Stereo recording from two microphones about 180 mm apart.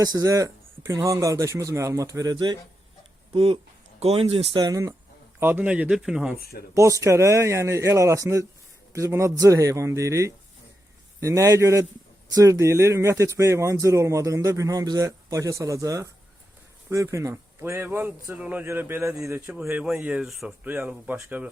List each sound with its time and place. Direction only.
0.0 s speech: 20° right (ahead or behind)
4.6 s speech: 20° right (ahead or behind); by 6.3 s 5° right (ahead or behind)
6.3 s speech: 60° left (ahead or behind)
6.7 s speech: 15° right (ahead or behind)